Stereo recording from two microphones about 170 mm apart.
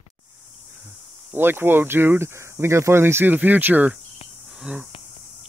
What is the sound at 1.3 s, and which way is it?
Speech, 10° right (ahead or behind).